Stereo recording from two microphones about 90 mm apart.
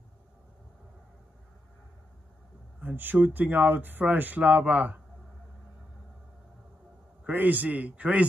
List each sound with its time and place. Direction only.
2.8 s speech: 20° right (ahead or behind)
7.2 s a man's voice: 20° right (ahead or behind)